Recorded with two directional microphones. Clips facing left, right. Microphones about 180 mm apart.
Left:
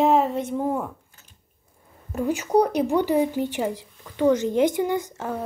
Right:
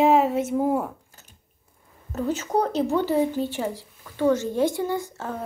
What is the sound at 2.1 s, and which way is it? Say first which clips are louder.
A woman's voice: left 3 dB; 10° left (ahead or behind).